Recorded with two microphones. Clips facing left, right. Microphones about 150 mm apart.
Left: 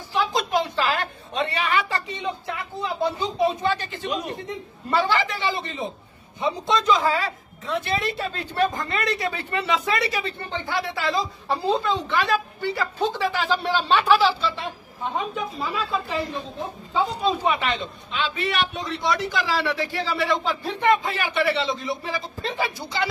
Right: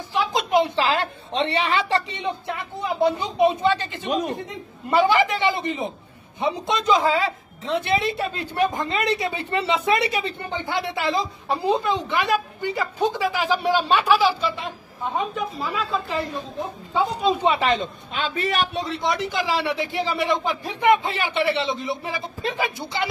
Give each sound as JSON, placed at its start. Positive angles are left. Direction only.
{"t": 0.1, "sound": "a woman's voice", "side_deg": -20}
{"t": 15.1, "sound": "a woman's voice", "side_deg": 0}
{"t": 17.2, "sound": "a man's voice", "side_deg": -25}
{"t": 17.6, "sound": "a man's voice", "side_deg": -40}
{"t": 18.9, "sound": "a man's voice", "side_deg": -20}
{"t": 21.0, "sound": "a man's voice", "side_deg": -25}